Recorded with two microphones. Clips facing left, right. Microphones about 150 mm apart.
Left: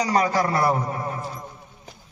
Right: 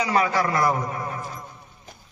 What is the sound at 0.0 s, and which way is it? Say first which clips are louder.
A man's voice: left 1 dB; 35° left (ahead or behind).